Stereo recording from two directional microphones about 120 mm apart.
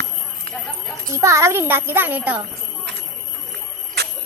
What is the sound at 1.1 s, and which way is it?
A child's voice, 25° right (ahead or behind).